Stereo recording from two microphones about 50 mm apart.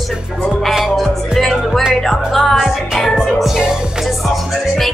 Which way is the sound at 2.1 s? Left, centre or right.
Centre.